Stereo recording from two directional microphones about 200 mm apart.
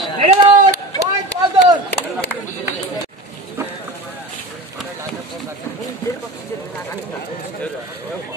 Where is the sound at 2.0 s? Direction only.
10° right (ahead or behind).